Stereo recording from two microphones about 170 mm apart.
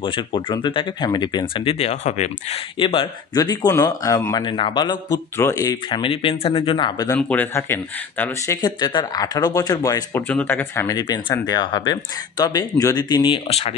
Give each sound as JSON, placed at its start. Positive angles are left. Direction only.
{"t": 0.0, "sound": "speech", "side_deg": 30}
{"t": 7.2, "sound": "speech", "side_deg": 10}
{"t": 8.5, "sound": "speech", "side_deg": 25}